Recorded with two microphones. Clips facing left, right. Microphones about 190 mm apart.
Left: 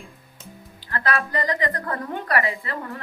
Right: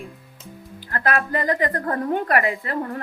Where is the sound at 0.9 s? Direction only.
50° right (ahead or behind).